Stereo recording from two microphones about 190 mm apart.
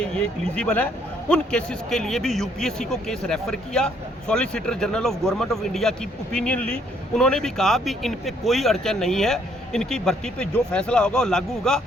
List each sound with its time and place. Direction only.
0.0 s a man's voice: 5° left (ahead or behind)